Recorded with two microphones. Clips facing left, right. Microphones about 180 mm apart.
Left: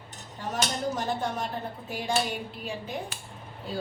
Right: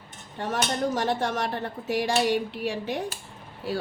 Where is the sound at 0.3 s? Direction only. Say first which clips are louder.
Right 4 dB; 75° right (ahead or behind).